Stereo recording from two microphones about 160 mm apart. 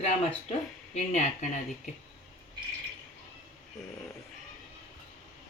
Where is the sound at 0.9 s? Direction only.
45° left (ahead or behind).